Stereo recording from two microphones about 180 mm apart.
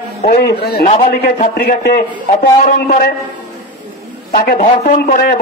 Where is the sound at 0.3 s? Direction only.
60° left (ahead or behind).